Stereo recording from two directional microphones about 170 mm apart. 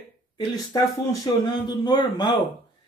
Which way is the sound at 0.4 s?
20° left (ahead or behind).